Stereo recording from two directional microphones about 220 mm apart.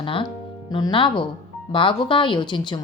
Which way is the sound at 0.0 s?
25° left (ahead or behind).